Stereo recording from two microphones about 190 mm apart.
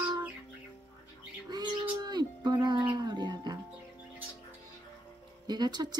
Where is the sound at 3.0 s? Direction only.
20° right (ahead or behind).